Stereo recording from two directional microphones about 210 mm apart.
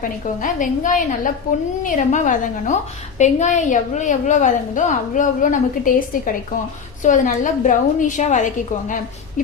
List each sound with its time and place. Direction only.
0.0 s a woman's voice: 40° left (ahead or behind)